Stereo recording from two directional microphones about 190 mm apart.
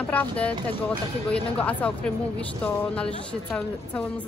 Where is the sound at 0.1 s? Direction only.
5° left (ahead or behind).